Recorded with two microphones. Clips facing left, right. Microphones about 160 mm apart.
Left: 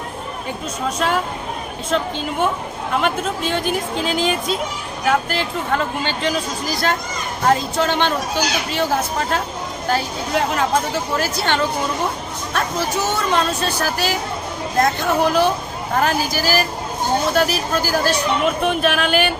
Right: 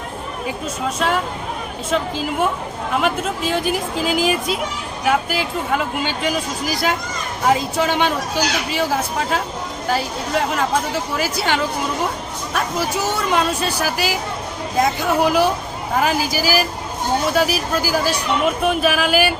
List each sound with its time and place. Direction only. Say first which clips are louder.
0.4 s speech: right 1 dB; centre (ahead or behind)
13.3 s speech: even; 10° right (ahead or behind)